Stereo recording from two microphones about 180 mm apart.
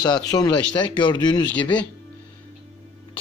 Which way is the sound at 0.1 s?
20° left (ahead or behind).